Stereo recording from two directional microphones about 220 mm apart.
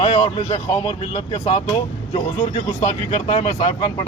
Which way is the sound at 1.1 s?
25° left (ahead or behind).